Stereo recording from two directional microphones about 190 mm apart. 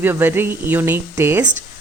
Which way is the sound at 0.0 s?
10° right (ahead or behind).